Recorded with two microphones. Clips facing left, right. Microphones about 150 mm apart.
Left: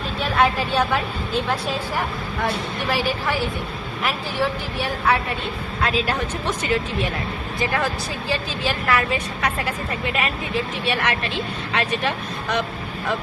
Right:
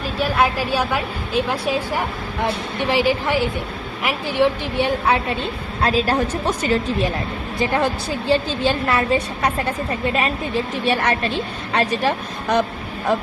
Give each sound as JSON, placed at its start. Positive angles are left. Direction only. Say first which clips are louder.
{"t": 0.2, "sound": "a woman's voice", "louder": "right 1 dB", "side_deg": -5}
{"t": 2.9, "sound": "a woman's voice", "louder": "right 5 dB", "side_deg": -15}
{"t": 5.8, "sound": "speech", "louder": "right 4 dB", "side_deg": -35}
{"t": 7.6, "sound": "a woman's voice", "louder": "right 4 dB", "side_deg": -30}